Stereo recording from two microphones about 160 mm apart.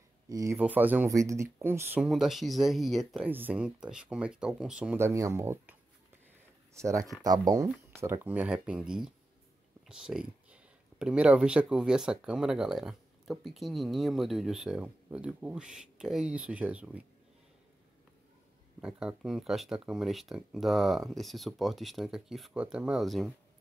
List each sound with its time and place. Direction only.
0.3 s speech: 20° right (ahead or behind)
2.0 s speech: centre (ahead or behind)
3.3 s speech: 10° right (ahead or behind)
4.9 s speech: 20° right (ahead or behind)
18.8 s speech: 5° right (ahead or behind)